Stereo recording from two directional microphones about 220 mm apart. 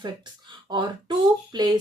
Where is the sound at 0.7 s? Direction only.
20° right (ahead or behind).